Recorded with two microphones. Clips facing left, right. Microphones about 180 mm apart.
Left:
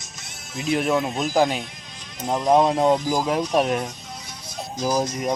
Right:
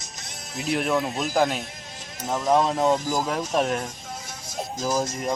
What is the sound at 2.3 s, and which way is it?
Speech, 15° left (ahead or behind).